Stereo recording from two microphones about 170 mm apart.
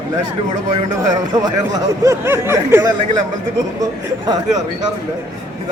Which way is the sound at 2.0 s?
15° right (ahead or behind).